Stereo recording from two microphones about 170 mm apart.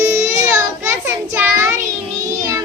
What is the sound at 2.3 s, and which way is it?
Music, 20° right (ahead or behind).